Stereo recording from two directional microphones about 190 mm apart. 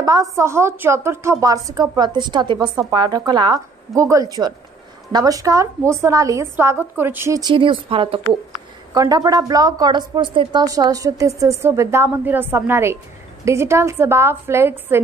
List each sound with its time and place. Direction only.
0.0 s a woman's voice: 20° right (ahead or behind)